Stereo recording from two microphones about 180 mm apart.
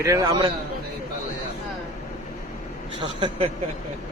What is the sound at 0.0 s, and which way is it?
Speech, 15° right (ahead or behind).